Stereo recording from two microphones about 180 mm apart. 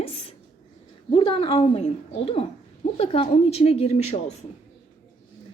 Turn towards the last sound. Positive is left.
turn(degrees=35)  # may be behind; listen again after turning